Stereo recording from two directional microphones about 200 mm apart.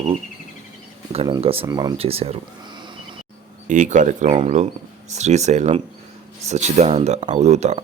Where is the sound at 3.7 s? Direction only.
40° right (ahead or behind).